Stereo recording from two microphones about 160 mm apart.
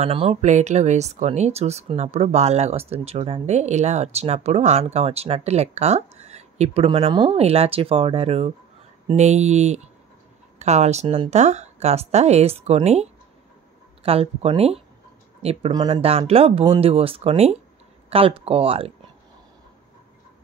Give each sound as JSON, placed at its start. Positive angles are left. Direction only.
{"t": 0.0, "sound": "speech", "side_deg": -40}
{"t": 15.9, "sound": "speech", "side_deg": -40}